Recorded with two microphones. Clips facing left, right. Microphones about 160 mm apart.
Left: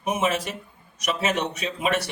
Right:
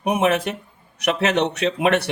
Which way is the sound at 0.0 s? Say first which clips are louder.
Right 5 dB; 65° right (ahead or behind).